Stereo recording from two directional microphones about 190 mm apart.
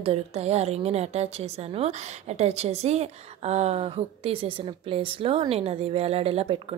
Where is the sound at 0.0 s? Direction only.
35° right (ahead or behind).